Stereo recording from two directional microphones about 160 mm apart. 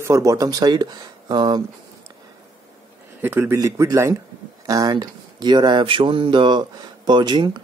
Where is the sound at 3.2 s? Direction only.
15° right (ahead or behind).